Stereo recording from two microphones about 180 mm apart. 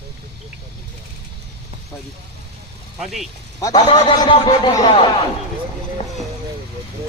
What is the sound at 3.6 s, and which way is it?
Speech, 20° left (ahead or behind).